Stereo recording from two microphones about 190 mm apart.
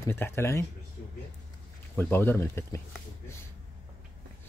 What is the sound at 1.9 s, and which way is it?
Speech, 10° left (ahead or behind).